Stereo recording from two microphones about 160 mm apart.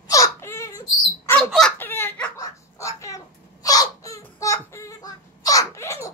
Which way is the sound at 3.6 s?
20° left (ahead or behind).